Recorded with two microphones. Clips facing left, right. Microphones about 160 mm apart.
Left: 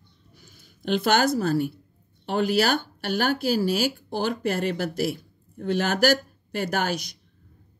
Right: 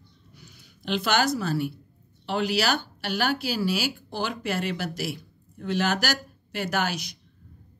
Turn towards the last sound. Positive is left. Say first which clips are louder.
# left 2 dB
turn(degrees=50)  # may be behind; listen again after turning